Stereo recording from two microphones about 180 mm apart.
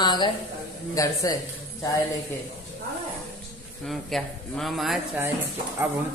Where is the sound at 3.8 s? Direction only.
Centre (ahead or behind).